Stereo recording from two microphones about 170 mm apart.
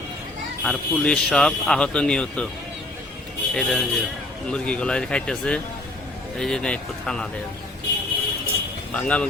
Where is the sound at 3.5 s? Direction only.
5° left (ahead or behind).